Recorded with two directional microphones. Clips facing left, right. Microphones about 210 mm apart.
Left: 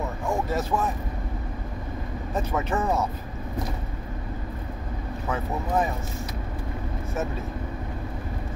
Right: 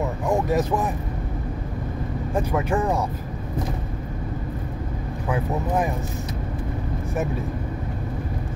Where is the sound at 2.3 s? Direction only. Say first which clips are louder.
Right 3 dB; 10° right (ahead or behind).